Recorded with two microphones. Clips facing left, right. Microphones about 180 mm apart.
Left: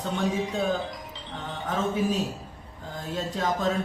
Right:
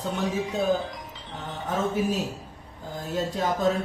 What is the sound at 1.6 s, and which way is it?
Speech, 10° right (ahead or behind).